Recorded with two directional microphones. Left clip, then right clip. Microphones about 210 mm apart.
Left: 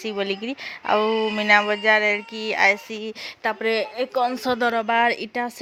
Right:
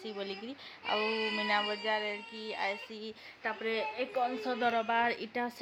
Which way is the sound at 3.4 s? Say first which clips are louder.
Left 11 dB; 50° left (ahead or behind).